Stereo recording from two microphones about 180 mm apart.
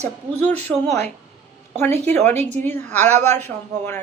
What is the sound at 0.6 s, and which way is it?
A man's voice, 40° right (ahead or behind).